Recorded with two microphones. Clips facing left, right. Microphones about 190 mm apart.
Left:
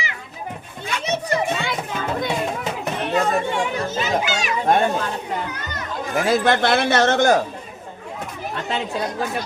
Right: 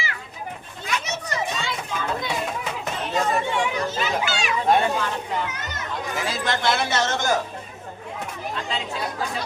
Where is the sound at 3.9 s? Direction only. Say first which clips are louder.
Left 3 dB; 45° left (ahead or behind).